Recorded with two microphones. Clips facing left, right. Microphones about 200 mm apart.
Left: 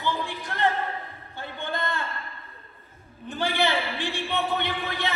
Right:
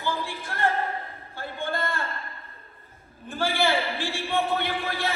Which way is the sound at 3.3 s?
20° left (ahead or behind).